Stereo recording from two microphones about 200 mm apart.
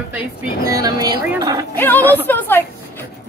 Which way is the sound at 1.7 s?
10° left (ahead or behind).